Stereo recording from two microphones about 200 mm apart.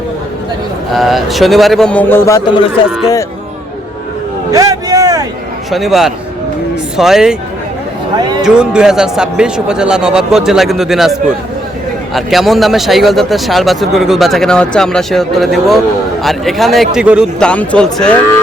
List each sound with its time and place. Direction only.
0.9 s speech: centre (ahead or behind); by 2.7 s 25° left (ahead or behind)
4.5 s vehicle: 20° right (ahead or behind)
5.7 s speech: centre (ahead or behind)
8.4 s speech: 5° right (ahead or behind)